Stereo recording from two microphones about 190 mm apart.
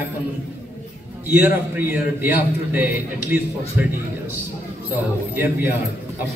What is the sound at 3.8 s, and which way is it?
Speech, 10° right (ahead or behind).